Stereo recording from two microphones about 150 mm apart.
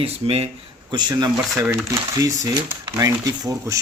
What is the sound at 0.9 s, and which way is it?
Speech, 30° right (ahead or behind).